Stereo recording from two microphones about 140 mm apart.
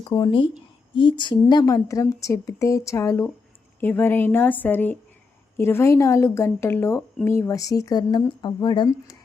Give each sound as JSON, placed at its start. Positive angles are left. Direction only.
{"t": 0.0, "sound": "a woman's voice", "side_deg": 30}